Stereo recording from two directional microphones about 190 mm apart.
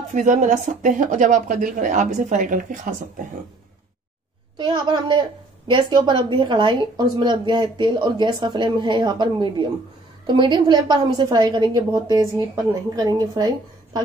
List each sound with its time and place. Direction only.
0.1 s a woman's voice: 40° right (ahead or behind)
4.6 s a woman's voice: 25° right (ahead or behind)